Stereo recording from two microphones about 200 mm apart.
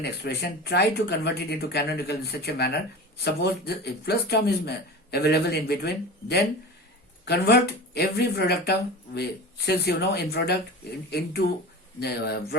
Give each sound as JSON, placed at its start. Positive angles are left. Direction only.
{"t": 0.0, "sound": "speech", "side_deg": 55}